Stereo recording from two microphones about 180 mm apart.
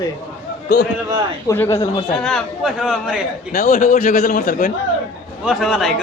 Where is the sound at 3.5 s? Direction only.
55° left (ahead or behind).